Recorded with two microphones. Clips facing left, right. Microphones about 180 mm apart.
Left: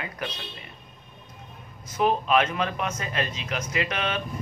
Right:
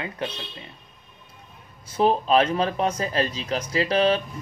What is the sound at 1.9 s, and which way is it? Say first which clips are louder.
Speech: right 3 dB; 30° right (ahead or behind).